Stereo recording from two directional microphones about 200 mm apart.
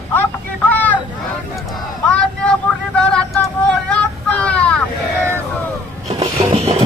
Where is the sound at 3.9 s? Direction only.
5° left (ahead or behind).